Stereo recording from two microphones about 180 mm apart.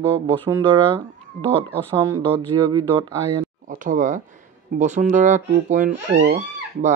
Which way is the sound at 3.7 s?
50° right (ahead or behind).